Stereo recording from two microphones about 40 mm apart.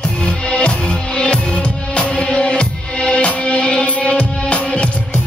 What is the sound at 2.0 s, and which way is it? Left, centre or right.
Music, left.